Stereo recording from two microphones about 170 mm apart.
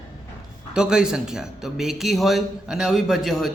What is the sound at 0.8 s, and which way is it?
A man's voice, 5° right (ahead or behind).